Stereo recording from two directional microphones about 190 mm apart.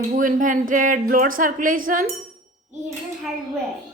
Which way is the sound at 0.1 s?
45° right (ahead or behind).